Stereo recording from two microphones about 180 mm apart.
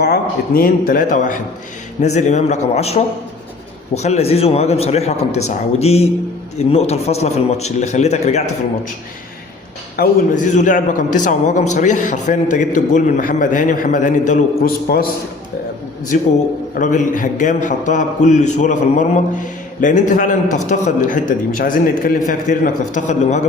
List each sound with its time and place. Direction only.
0.0 s a man's voice: 55° left (ahead or behind); by 8.5 s 40° left (ahead or behind)
10.0 s a man's voice: 45° left (ahead or behind)
16.1 s a man's voice: 45° left (ahead or behind)